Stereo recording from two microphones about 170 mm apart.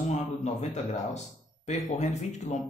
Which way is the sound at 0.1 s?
45° left (ahead or behind).